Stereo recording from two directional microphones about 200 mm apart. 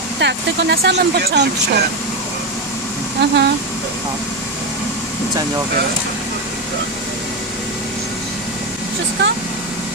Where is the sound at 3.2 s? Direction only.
55° right (ahead or behind).